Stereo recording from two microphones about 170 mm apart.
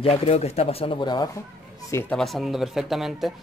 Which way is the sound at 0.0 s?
35° left (ahead or behind).